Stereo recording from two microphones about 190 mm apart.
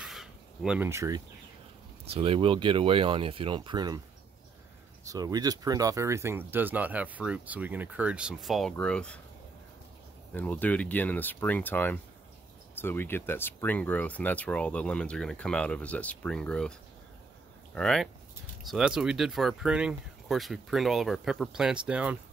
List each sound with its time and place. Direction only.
0.0 s a sound: centre (ahead or behind)
2.0 s speech: 30° right (ahead or behind)
5.0 s speech: 20° right (ahead or behind); by 9.2 s 5° left (ahead or behind)
10.3 s speech: 10° left (ahead or behind)
17.7 s speech: centre (ahead or behind)